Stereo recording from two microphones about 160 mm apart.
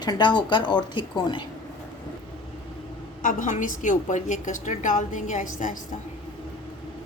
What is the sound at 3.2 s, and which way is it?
A woman's voice, 50° left (ahead or behind).